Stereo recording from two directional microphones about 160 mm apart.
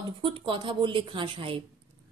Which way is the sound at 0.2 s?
30° right (ahead or behind).